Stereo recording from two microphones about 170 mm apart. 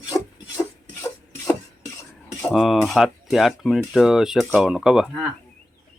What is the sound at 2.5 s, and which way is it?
Speech, centre (ahead or behind).